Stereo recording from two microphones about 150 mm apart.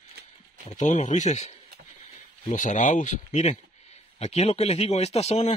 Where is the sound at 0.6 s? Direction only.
55° left (ahead or behind).